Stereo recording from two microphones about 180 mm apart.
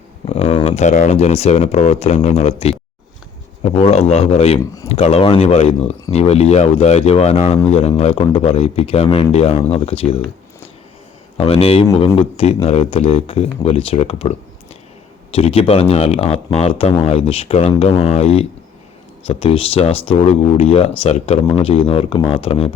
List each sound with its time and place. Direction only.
0.3 s speech: 40° left (ahead or behind)
11.3 s speech: 35° left (ahead or behind)